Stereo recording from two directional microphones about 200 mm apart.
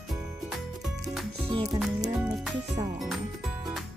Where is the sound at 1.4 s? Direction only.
20° right (ahead or behind).